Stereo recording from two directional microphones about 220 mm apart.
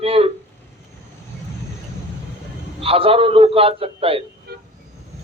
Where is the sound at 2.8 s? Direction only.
25° right (ahead or behind).